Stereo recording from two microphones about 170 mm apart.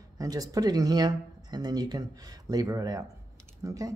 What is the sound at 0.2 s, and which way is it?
Speech, 20° right (ahead or behind).